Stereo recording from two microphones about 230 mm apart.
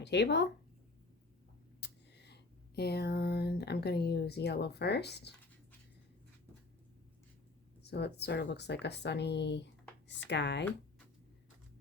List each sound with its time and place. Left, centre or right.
0.0 s speech: left
1.8 s speech: left
7.8 s speech: left